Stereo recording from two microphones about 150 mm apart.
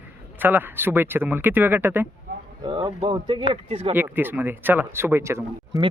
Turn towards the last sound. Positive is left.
turn(degrees=-20)  # may be behind; listen again after turning